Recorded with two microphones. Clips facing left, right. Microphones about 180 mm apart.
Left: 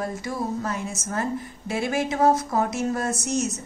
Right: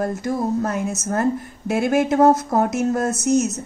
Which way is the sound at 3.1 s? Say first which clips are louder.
Right 7 dB; centre (ahead or behind).